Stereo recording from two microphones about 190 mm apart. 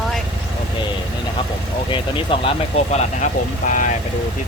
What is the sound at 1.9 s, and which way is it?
Speech, 25° left (ahead or behind).